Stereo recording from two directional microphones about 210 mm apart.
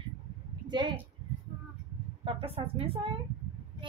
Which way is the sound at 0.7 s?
20° right (ahead or behind).